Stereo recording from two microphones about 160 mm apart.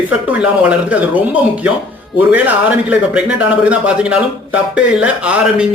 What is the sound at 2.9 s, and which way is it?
A man's voice, 10° right (ahead or behind).